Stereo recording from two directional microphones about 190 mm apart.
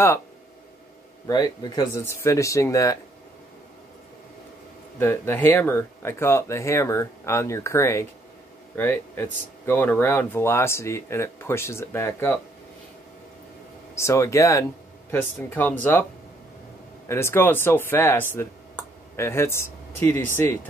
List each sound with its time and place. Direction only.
1.2 s speech: 20° left (ahead or behind)
4.9 s speech: 10° left (ahead or behind)
13.9 s speech: 15° left (ahead or behind)
17.1 s speech: 15° left (ahead or behind)